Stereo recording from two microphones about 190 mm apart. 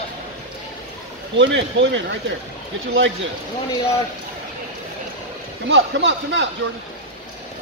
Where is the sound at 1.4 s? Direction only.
75° right (ahead or behind).